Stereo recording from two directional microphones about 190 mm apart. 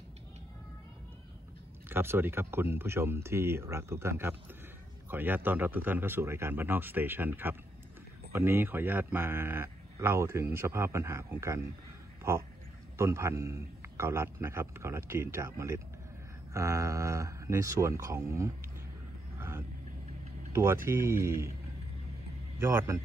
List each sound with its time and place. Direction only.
1.9 s speech: 10° right (ahead or behind)
20.5 s speech: 15° right (ahead or behind)
22.6 s speech: 15° right (ahead or behind)